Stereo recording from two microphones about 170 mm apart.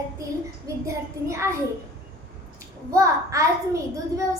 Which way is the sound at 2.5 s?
20° right (ahead or behind).